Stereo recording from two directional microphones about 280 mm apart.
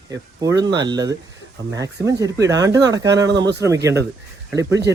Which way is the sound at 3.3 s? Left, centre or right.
Right.